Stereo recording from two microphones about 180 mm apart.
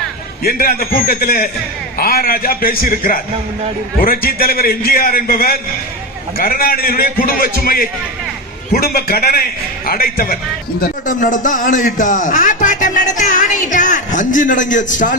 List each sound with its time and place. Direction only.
0.4 s a man's voice: 55° left (ahead or behind)